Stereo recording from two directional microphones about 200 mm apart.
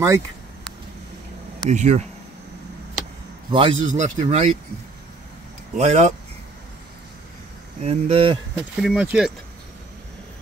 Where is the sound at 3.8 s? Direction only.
40° right (ahead or behind).